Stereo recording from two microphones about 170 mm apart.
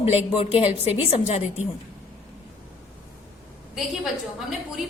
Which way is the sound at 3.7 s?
5° right (ahead or behind).